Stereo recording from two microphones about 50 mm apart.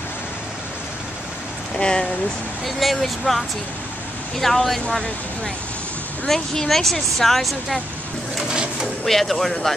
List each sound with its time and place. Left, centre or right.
1.8 s speech: centre
2.6 s speech: centre
6.2 s speech: centre
8.5 s a sound: centre
9.0 s speech: centre